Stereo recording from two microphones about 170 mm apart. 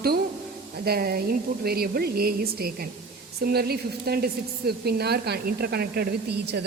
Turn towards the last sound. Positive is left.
turn(degrees=-70)  # may be behind; listen again after turning